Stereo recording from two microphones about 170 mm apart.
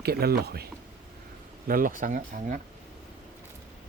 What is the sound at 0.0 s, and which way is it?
Speech, 65° right (ahead or behind).